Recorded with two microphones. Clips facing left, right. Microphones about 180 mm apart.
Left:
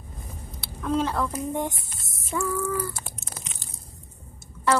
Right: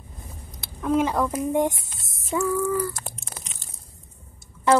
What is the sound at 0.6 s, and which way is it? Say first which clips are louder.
Speech: right 3 dB; 15° right (ahead or behind).